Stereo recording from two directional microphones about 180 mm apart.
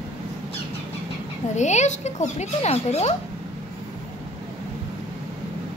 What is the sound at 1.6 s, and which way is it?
Speech, 40° left (ahead or behind).